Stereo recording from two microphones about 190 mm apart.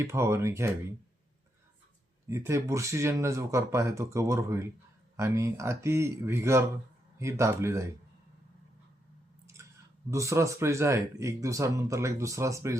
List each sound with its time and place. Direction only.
0.0 s speech: 15° right (ahead or behind)
2.3 s speech: 15° right (ahead or behind)
10.1 s speech: 15° right (ahead or behind)